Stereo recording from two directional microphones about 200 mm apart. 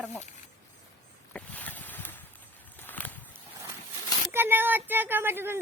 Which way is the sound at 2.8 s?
10° left (ahead or behind).